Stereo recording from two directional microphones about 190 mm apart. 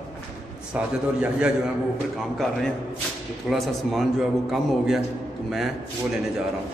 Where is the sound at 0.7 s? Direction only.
5° right (ahead or behind).